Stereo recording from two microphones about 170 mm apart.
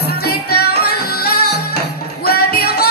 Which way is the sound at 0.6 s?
70° left (ahead or behind).